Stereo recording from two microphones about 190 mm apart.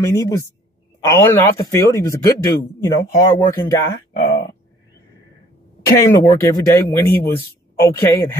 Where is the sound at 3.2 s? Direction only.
20° left (ahead or behind).